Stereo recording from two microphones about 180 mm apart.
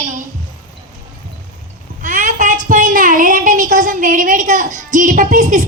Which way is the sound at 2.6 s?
45° right (ahead or behind).